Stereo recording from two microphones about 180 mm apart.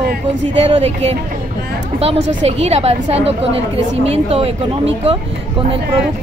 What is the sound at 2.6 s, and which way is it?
Speech, 35° right (ahead or behind).